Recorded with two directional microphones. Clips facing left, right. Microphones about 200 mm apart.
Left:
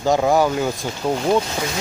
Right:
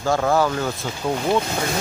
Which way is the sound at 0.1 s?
15° left (ahead or behind).